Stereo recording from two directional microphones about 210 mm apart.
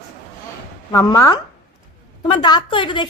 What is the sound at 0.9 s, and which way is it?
A woman's voice, 15° left (ahead or behind).